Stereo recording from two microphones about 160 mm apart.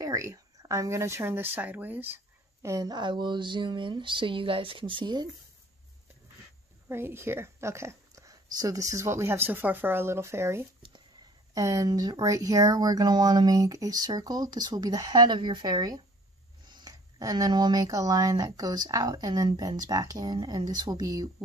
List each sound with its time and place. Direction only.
0.0 s speech: 20° right (ahead or behind)
6.9 s speech: 15° right (ahead or behind)